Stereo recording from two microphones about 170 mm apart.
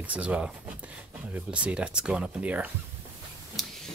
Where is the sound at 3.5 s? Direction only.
Centre (ahead or behind).